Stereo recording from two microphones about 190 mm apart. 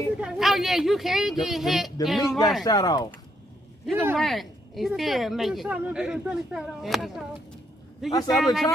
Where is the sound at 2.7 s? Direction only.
20° left (ahead or behind).